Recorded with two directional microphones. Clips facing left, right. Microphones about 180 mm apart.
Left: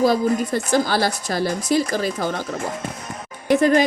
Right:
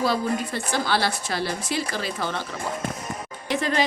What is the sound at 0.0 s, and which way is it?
Speech, 45° left (ahead or behind).